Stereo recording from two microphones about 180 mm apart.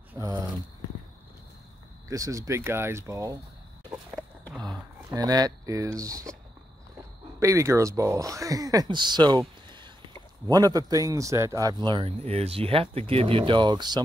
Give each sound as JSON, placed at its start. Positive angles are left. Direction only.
{"t": 0.1, "sound": "a sound", "side_deg": -20}
{"t": 2.0, "sound": "speech", "side_deg": -20}
{"t": 5.1, "sound": "speech", "side_deg": -20}
{"t": 7.3, "sound": "speech", "side_deg": -15}
{"t": 10.5, "sound": "speech", "side_deg": -20}